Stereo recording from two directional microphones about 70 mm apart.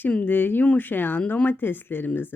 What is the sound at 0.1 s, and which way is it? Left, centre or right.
Speech, left.